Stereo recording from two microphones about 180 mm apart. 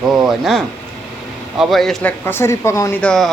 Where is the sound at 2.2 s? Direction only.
15° left (ahead or behind).